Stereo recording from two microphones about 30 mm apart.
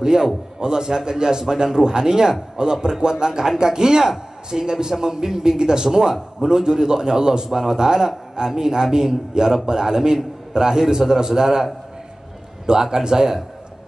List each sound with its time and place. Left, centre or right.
0.0 s a man's voice: centre
9.3 s a man's voice: right
12.8 s a man's voice: centre